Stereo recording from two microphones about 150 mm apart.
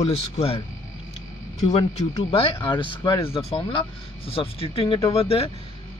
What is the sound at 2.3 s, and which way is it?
A man's voice, 35° left (ahead or behind).